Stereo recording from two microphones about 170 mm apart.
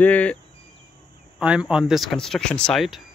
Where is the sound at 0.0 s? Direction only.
10° left (ahead or behind).